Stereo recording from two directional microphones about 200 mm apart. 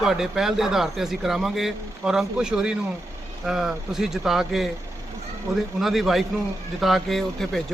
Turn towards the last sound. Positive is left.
turn(degrees=0)  # may be behind; listen again after turning